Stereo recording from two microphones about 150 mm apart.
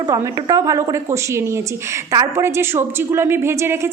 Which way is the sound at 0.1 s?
20° right (ahead or behind).